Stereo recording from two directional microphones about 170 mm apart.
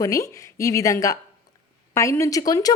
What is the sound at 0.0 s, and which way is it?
A woman's voice, 20° left (ahead or behind).